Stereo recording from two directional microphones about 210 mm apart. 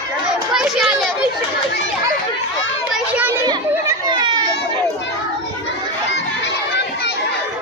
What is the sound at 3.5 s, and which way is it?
Children playing, 20° right (ahead or behind).